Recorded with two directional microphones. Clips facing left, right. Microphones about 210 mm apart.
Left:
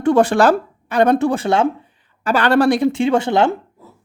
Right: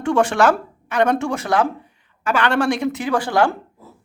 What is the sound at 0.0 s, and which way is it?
A woman's voice, 35° left (ahead or behind).